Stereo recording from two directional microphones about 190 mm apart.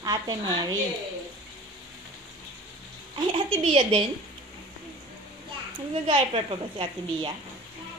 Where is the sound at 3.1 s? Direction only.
30° right (ahead or behind).